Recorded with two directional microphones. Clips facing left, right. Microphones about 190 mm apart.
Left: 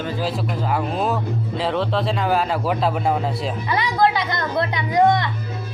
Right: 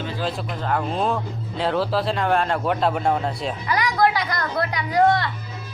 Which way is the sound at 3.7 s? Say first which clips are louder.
Left 1 dB; 25° left (ahead or behind).